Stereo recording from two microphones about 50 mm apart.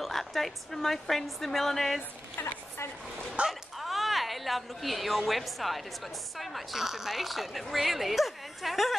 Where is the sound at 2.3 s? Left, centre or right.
Left.